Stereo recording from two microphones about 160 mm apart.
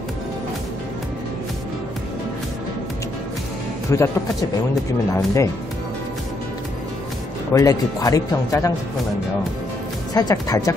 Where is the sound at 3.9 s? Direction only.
15° left (ahead or behind).